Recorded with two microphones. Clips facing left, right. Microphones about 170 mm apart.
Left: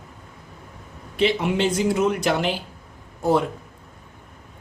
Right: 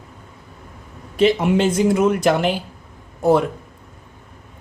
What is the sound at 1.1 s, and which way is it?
Speech, 45° right (ahead or behind).